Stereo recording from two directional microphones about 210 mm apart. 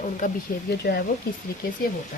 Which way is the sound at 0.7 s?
50° left (ahead or behind).